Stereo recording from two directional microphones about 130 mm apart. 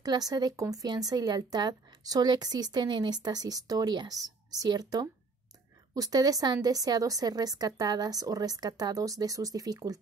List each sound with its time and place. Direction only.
0.0 s a woman's voice: 30° right (ahead or behind)